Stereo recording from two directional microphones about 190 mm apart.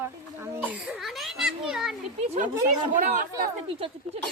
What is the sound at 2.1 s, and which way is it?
Speech, 35° right (ahead or behind).